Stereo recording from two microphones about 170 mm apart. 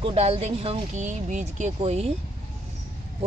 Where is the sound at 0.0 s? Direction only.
35° right (ahead or behind).